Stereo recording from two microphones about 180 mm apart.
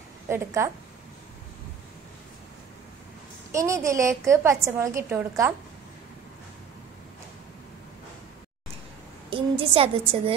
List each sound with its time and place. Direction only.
0.3 s a woman's voice: 15° right (ahead or behind)
3.5 s a woman's voice: 15° right (ahead or behind)
9.3 s a woman's voice: 30° right (ahead or behind)